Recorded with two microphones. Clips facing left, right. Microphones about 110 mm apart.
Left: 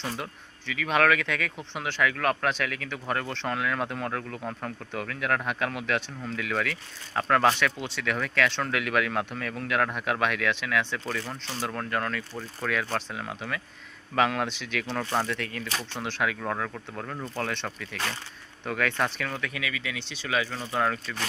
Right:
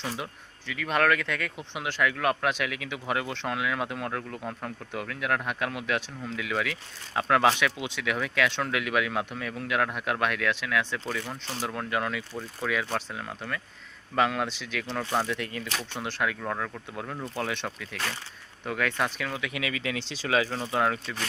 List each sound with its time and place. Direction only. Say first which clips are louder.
0.0 s speech: even; 5° right (ahead or behind)
19.5 s speech: right 2 dB; 25° right (ahead or behind)